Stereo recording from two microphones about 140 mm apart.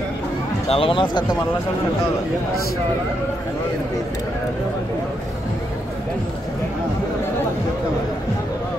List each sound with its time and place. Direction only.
0.7 s speech: 40° left (ahead or behind)